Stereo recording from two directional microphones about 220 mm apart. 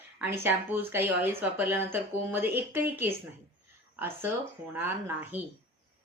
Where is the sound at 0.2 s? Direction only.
10° right (ahead or behind).